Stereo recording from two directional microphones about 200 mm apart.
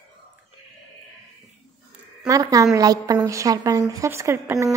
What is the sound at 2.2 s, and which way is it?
A woman's voice, 15° right (ahead or behind).